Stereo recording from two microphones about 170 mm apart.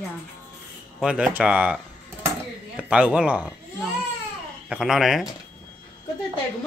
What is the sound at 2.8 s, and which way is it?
Speech, 5° right (ahead or behind).